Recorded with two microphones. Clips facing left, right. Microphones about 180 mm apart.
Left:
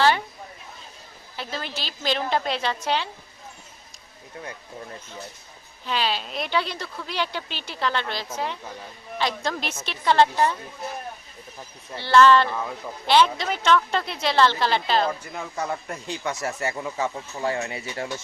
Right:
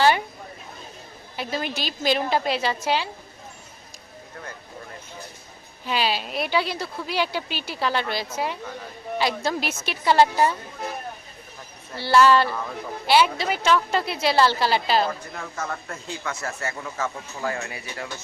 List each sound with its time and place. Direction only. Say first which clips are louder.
1.4 s a woman's voice: right 4 dB; 15° right (ahead or behind)
5.8 s a woman's voice: right 2 dB; 10° right (ahead or behind)
11.9 s a woman's voice: left 1 dB; 10° right (ahead or behind)
15.4 s speech: left 2 dB; 15° left (ahead or behind)